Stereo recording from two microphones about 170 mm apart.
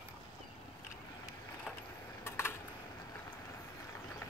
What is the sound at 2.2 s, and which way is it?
Typing, 15° left (ahead or behind).